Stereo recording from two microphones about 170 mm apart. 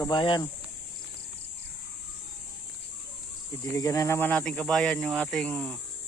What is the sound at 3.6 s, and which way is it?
Speech, 15° left (ahead or behind).